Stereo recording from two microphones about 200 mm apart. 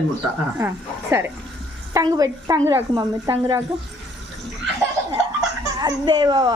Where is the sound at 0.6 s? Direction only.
15° right (ahead or behind).